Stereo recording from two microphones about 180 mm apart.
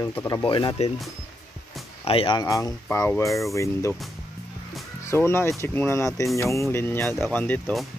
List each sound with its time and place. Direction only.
0.0 s speech: 15° left (ahead or behind)
2.0 s speech: 30° left (ahead or behind); by 3.3 s 15° left (ahead or behind)
3.3 s speech: centre (ahead or behind)
3.5 s speech: 15° left (ahead or behind)
5.0 s speech: 15° left (ahead or behind)